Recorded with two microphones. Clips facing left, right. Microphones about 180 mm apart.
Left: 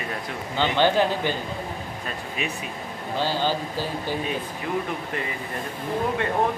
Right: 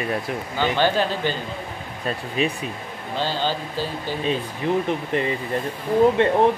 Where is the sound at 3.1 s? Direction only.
10° left (ahead or behind).